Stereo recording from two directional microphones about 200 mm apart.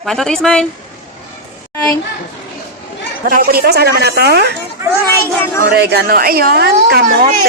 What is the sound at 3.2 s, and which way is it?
A woman's voice, 45° right (ahead or behind).